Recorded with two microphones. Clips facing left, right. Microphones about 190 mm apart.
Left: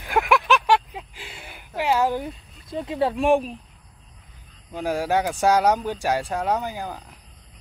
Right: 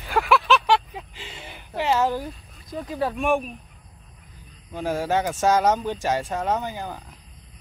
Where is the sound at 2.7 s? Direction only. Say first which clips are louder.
Left 3 dB; 25° left (ahead or behind).